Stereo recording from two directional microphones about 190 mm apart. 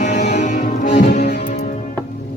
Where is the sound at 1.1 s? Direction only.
55° left (ahead or behind).